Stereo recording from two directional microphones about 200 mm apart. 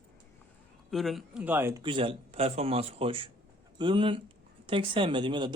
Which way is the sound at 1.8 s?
25° right (ahead or behind).